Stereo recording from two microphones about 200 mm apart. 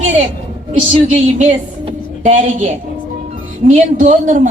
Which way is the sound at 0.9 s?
30° right (ahead or behind).